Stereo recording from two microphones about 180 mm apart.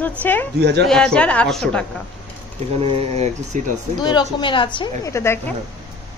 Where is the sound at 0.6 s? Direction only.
70° right (ahead or behind).